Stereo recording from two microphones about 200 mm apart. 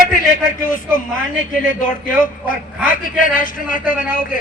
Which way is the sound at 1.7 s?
40° left (ahead or behind).